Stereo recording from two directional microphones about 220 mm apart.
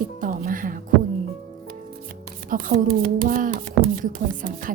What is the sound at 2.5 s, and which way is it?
Speech, 40° right (ahead or behind).